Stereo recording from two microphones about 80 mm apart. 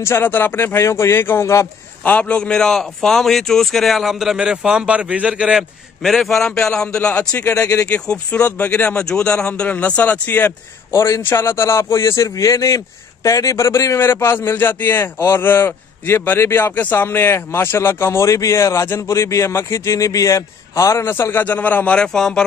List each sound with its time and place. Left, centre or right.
0.0 s speech: left
2.0 s a man's voice: centre
7.3 s a man's voice: left
7.6 s speech: left
7.9 s speech: centre
10.9 s a man's voice: left
21.0 s speech: left
21.9 s speech: centre